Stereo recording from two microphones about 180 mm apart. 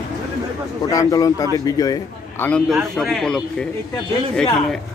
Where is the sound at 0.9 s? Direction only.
20° left (ahead or behind).